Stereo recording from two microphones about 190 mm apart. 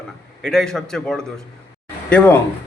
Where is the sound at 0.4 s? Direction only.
5° left (ahead or behind).